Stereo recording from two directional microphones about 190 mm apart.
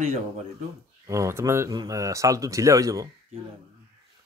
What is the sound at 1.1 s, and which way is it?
Speech, 15° right (ahead or behind).